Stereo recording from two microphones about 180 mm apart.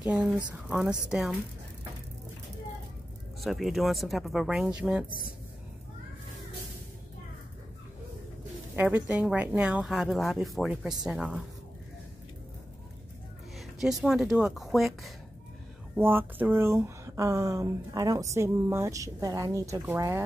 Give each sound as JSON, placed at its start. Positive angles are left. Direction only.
{"t": 0.0, "sound": "speech", "side_deg": -5}
{"t": 3.3, "sound": "speech", "side_deg": 0}
{"t": 8.7, "sound": "speech", "side_deg": -10}
{"t": 13.6, "sound": "speech", "side_deg": 0}
{"t": 16.0, "sound": "speech", "side_deg": -10}